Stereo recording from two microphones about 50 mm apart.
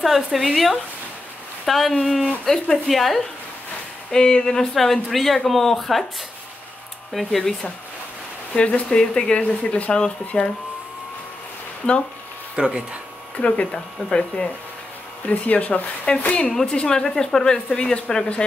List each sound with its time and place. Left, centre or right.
0.0 s a woman's voice: centre
4.1 s a woman's voice: centre
7.2 s a woman's voice: centre
8.5 s speech: left
8.9 s speech: centre
12.5 s speech: centre
13.4 s speech: left
14.0 s speech: centre
15.2 s speech: left